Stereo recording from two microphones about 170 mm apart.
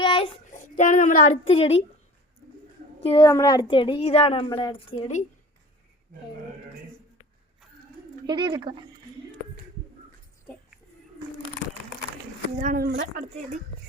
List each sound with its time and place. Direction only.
0.0 s child singing: 30° left (ahead or behind)
0.5 s a woman's voice: 50° left (ahead or behind)
3.0 s a woman's voice: 35° left (ahead or behind)
3.2 s a woman's voice: 20° left (ahead or behind)
8.3 s speech: 25° right (ahead or behind)
12.5 s speech: 55° right (ahead or behind)